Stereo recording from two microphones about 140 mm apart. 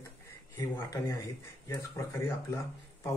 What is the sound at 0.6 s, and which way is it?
Speech, 20° left (ahead or behind).